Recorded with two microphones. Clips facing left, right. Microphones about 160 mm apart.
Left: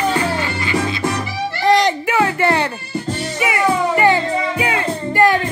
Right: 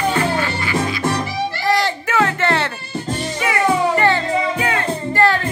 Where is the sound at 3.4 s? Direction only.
10° left (ahead or behind).